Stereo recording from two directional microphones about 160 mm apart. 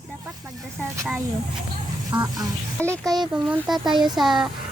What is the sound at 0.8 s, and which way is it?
Speech, 10° right (ahead or behind).